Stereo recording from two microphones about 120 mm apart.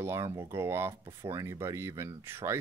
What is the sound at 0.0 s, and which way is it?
Speech, 20° right (ahead or behind).